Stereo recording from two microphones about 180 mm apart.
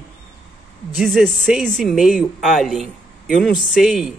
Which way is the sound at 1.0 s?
Centre (ahead or behind).